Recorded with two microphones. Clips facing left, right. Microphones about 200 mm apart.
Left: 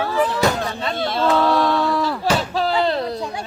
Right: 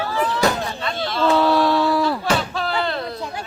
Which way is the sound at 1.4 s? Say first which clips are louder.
Right 1 dB; 5° right (ahead or behind).